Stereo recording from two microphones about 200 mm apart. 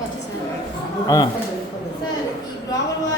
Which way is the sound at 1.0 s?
20° left (ahead or behind).